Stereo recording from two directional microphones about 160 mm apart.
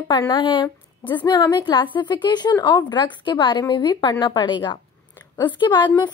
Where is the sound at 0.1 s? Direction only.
25° left (ahead or behind).